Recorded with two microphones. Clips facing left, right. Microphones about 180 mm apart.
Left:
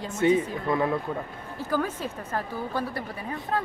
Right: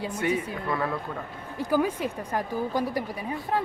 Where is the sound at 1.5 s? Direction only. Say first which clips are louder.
Right 3 dB; 15° right (ahead or behind).